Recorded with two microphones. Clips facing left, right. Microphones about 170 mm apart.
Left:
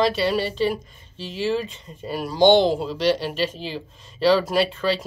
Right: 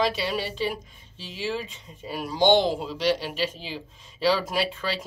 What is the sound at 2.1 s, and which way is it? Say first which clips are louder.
Speech: left 4 dB; 35° left (ahead or behind).